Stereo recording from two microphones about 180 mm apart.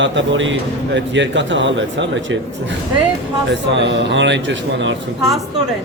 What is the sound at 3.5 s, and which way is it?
Speech, 80° right.